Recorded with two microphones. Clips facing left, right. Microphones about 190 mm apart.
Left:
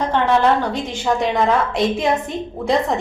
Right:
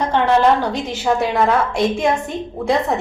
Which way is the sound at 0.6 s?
10° right (ahead or behind).